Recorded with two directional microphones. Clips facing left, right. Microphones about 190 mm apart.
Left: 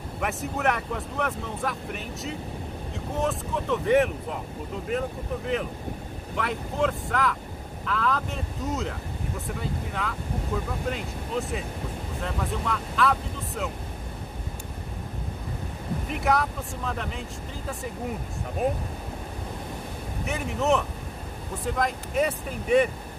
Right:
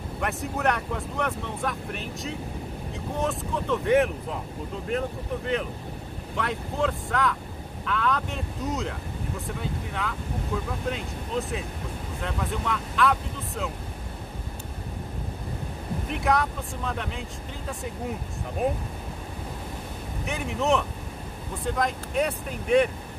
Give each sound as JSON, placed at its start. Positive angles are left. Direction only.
{"t": 0.2, "sound": "speech", "side_deg": 0}
{"t": 16.1, "sound": "speech", "side_deg": 0}
{"t": 20.2, "sound": "speech", "side_deg": 0}